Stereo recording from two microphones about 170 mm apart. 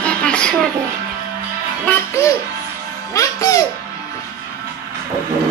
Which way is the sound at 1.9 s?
15° left (ahead or behind).